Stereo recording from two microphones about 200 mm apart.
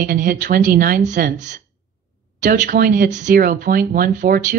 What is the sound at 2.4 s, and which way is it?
Speech, 40° right (ahead or behind).